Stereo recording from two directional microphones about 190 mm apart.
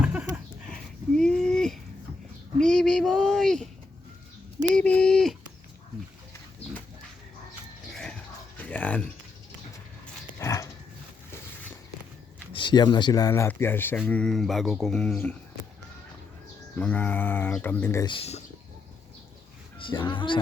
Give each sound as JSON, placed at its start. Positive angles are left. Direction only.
{"t": 0.0, "sound": "a sound", "side_deg": -5}
{"t": 2.6, "sound": "speech", "side_deg": 5}
{"t": 4.7, "sound": "speech", "side_deg": 5}
{"t": 8.5, "sound": "a sound", "side_deg": 5}
{"t": 10.4, "sound": "dog", "side_deg": 15}
{"t": 12.5, "sound": "speech", "side_deg": 25}
{"t": 16.7, "sound": "speech", "side_deg": 10}
{"t": 18.0, "sound": "speech", "side_deg": 30}
{"t": 19.8, "sound": "speech", "side_deg": 25}